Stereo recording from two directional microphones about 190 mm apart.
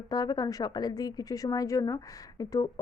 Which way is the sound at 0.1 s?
20° left (ahead or behind).